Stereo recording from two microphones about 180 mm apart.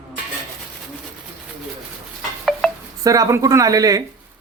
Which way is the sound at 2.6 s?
5° left (ahead or behind).